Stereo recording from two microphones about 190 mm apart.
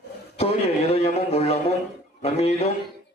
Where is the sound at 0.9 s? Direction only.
35° left (ahead or behind).